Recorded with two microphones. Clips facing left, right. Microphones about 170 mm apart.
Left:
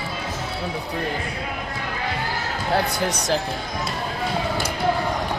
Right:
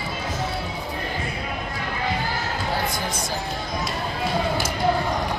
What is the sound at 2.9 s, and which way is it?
Speech, 70° left (ahead or behind).